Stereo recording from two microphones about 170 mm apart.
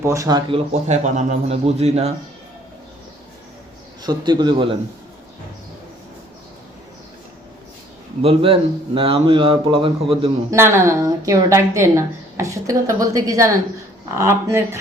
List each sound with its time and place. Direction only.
0.0 s speech: 20° right (ahead or behind)
0.7 s speech: 45° right (ahead or behind)
4.0 s speech: 25° right (ahead or behind)
8.2 s speech: 30° right (ahead or behind)
10.5 s a woman's voice: 15° right (ahead or behind)